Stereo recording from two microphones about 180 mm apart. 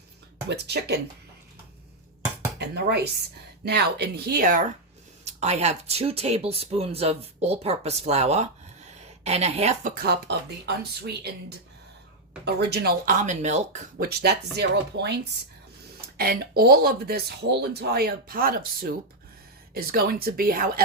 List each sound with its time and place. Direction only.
0.4 s speech: 70° right (ahead or behind)
2.6 s speech: 65° right (ahead or behind); by 4.6 s 50° right (ahead or behind)
5.2 s speech: 35° right (ahead or behind)
9.9 s speech: 60° right (ahead or behind); by 13.8 s 40° right (ahead or behind)
14.0 s speech: 60° right (ahead or behind)
16.0 s speech: 55° right (ahead or behind)